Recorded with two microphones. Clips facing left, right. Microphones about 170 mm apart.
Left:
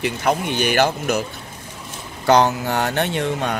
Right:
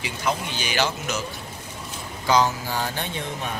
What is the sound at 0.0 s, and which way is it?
Speech, 60° left (ahead or behind).